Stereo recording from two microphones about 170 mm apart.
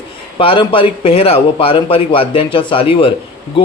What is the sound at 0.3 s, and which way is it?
A man's voice, 30° left (ahead or behind).